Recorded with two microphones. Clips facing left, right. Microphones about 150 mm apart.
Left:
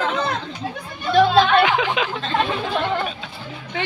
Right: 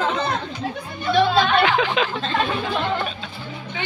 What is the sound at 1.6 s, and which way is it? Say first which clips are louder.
Speech: even; 20° left (ahead or behind).